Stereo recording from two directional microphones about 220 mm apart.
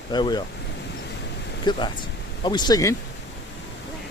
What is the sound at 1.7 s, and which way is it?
Speech, 20° left (ahead or behind).